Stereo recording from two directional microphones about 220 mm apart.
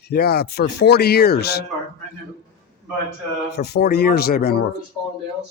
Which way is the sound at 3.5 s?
50° left (ahead or behind).